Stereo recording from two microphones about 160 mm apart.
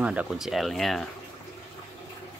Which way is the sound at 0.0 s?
10° right (ahead or behind).